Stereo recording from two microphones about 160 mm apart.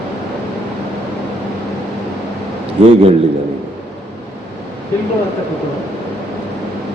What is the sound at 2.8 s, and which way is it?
Speech, 35° right (ahead or behind).